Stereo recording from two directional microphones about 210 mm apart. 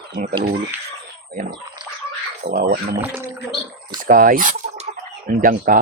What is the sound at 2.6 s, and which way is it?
Speech, 45° right (ahead or behind).